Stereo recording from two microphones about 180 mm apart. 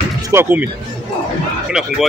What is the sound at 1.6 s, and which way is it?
Speech, 5° right (ahead or behind).